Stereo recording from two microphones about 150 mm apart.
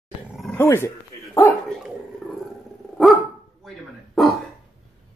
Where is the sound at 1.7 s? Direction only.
Centre (ahead or behind).